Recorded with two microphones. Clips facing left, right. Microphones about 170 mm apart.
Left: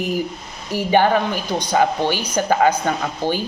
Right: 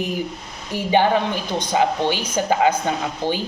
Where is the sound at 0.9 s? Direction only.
20° right (ahead or behind).